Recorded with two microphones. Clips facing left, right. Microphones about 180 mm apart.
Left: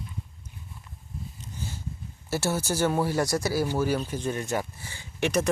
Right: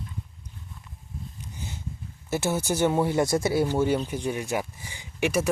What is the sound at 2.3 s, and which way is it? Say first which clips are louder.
Speech: right 1 dB; 20° right (ahead or behind).